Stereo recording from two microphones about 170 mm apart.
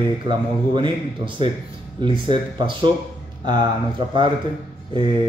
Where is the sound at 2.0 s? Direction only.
25° right (ahead or behind).